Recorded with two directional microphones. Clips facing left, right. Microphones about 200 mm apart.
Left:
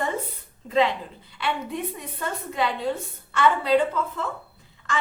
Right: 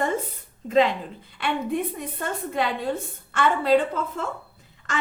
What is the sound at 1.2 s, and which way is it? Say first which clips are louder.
A woman's voice: right 2 dB; 50° right (ahead or behind).